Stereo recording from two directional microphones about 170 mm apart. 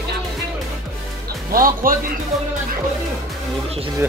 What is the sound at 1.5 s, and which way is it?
Speech, 55° right (ahead or behind).